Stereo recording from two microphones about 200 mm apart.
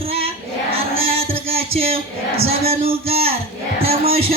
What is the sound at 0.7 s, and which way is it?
Music, 30° right (ahead or behind).